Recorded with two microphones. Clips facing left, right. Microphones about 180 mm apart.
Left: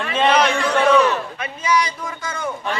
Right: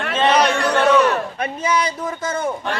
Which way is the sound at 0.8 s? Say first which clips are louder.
Even; centre (ahead or behind).